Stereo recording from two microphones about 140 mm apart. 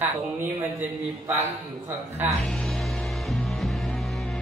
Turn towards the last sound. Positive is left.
turn(degrees=0)  # may be behind; listen again after turning